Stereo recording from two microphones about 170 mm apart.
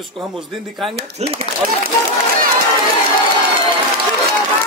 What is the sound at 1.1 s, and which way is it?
Speech, 35° right (ahead or behind).